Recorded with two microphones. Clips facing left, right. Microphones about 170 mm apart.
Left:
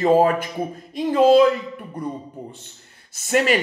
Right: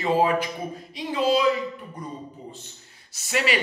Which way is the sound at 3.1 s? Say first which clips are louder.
Left 6 dB; 50° left (ahead or behind).